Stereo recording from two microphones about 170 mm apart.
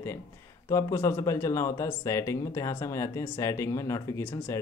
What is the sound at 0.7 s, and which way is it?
Speech, 20° left (ahead or behind).